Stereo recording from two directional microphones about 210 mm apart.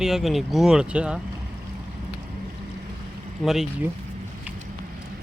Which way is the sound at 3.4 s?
Centre (ahead or behind).